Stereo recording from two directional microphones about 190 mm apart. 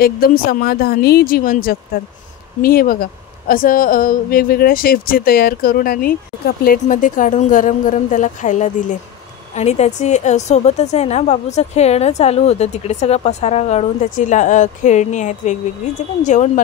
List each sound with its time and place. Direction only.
0.0 s a woman's voice: 50° left (ahead or behind)